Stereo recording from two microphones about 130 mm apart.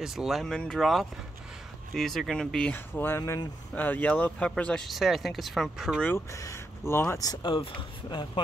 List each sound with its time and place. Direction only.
0.0 s speech: 5° right (ahead or behind)
6.0 s speech: 20° left (ahead or behind)
7.5 s speech: 40° left (ahead or behind)